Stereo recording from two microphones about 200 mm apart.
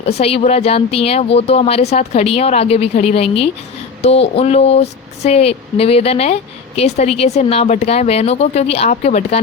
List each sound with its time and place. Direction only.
0.2 s speech: 30° left (ahead or behind)